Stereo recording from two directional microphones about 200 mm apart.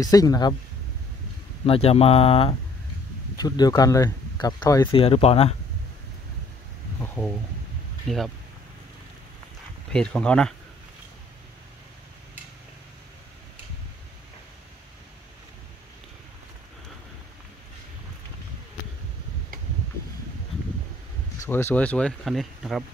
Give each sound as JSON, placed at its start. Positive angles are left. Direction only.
{"t": 0.0, "sound": "speech", "side_deg": 15}
{"t": 1.7, "sound": "speech", "side_deg": 30}
{"t": 7.0, "sound": "speech", "side_deg": 5}
{"t": 9.9, "sound": "speech", "side_deg": 5}
{"t": 21.5, "sound": "speech", "side_deg": 10}